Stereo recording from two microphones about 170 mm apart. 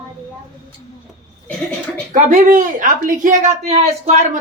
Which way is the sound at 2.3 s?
50° right (ahead or behind).